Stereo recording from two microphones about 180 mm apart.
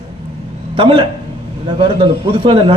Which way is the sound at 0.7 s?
30° right (ahead or behind).